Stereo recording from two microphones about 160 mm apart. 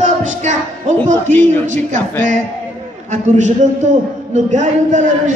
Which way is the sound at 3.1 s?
50° right (ahead or behind).